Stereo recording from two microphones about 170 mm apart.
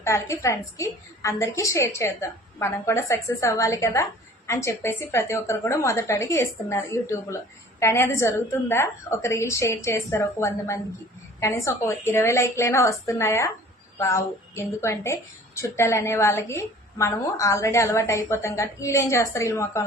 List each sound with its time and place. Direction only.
0.0 s a woman's voice: 15° left (ahead or behind)